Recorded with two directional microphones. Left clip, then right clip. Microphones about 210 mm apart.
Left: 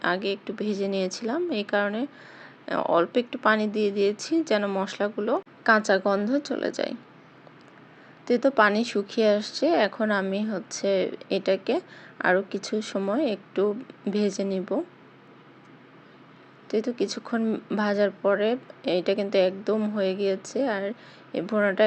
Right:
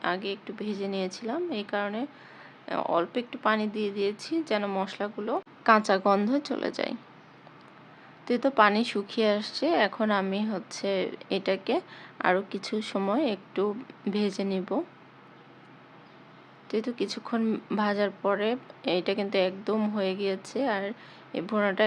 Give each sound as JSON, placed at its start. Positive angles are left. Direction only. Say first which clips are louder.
{"t": 0.0, "sound": "speech", "louder": "left 4 dB", "side_deg": 15}
{"t": 5.6, "sound": "speech", "louder": "left 1 dB", "side_deg": 0}
{"t": 8.2, "sound": "speech", "louder": "left 2 dB", "side_deg": 5}
{"t": 16.6, "sound": "speech", "louder": "left 4 dB", "side_deg": 5}